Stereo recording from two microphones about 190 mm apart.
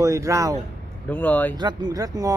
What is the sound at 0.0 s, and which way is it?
Speech, 15° right (ahead or behind).